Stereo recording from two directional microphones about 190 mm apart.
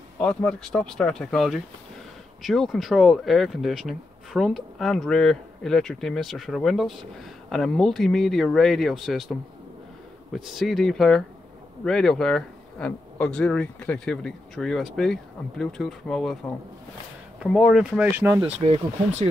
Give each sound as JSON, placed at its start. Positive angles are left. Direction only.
{"t": 0.2, "sound": "speech", "side_deg": 5}
{"t": 10.3, "sound": "speech", "side_deg": 0}
{"t": 17.4, "sound": "speech", "side_deg": 0}
{"t": 18.6, "sound": "speech", "side_deg": -35}